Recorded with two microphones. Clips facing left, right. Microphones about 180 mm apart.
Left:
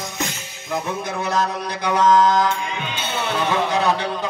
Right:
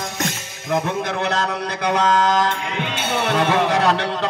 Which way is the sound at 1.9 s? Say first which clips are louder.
Left 3 dB; 90° right.